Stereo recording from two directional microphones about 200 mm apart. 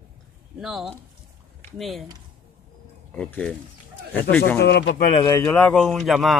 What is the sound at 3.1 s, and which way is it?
Speech, 5° left (ahead or behind).